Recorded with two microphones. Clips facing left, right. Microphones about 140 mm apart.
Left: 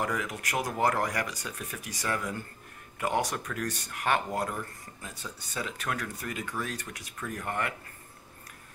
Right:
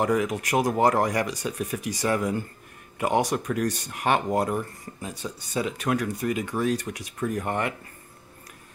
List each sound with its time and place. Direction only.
0.0 s speech: 20° right (ahead or behind)